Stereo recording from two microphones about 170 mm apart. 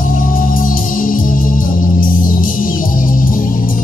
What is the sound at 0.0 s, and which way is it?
Music, 55° left (ahead or behind).